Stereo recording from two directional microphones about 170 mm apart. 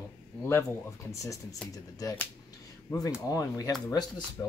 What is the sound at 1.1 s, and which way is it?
Speech, 20° left (ahead or behind).